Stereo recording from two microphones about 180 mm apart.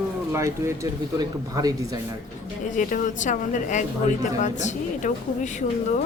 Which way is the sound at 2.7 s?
45° left (ahead or behind).